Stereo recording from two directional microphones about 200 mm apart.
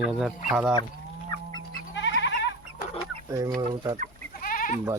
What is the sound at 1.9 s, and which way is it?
Goat, 65° left (ahead or behind).